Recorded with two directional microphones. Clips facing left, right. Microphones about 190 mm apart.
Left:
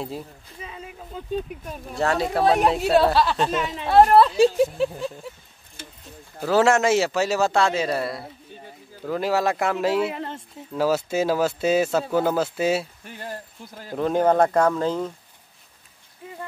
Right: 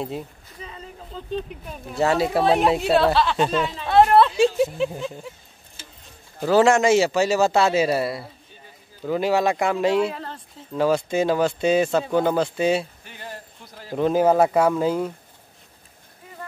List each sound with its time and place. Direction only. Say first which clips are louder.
0.0 s speech: right 2 dB; 5° left (ahead or behind)
1.7 s speech: right 3 dB; 5° right (ahead or behind)
6.4 s speech: right 2 dB; centre (ahead or behind)
10.1 s a sound: left 3 dB; 20° left (ahead or behind)
10.7 s speech: right 1 dB; 5° left (ahead or behind)
13.9 s speech: right 1 dB; 5° right (ahead or behind)